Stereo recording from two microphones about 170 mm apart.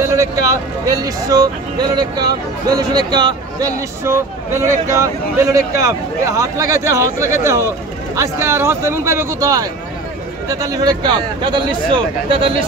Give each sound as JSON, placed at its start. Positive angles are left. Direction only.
{"t": 0.0, "sound": "speech", "side_deg": -20}